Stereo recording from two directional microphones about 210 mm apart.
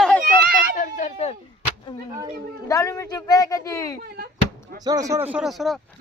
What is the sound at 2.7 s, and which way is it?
Speech, 15° left (ahead or behind).